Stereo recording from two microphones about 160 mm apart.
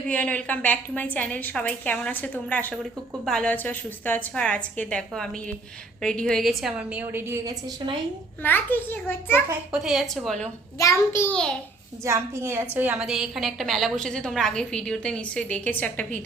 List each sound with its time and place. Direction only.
0.1 s a woman's voice: 10° left (ahead or behind); by 7.5 s 15° right (ahead or behind)
8.4 s a woman's voice: 10° left (ahead or behind)
9.7 s a woman's voice: 5° right (ahead or behind)
10.8 s a woman's voice: 20° left (ahead or behind)
12.0 s a woman's voice: 15° right (ahead or behind); by 16.2 s 10° left (ahead or behind)